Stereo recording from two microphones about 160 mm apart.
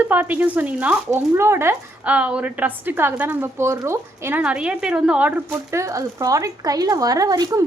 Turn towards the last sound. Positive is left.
turn(degrees=-25)  # may be behind; listen again after turning